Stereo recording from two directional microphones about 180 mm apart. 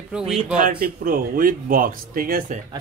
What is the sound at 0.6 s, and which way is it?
Speech, 55° right (ahead or behind).